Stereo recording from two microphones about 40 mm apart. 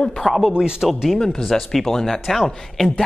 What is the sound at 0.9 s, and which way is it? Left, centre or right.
A man's voice, centre.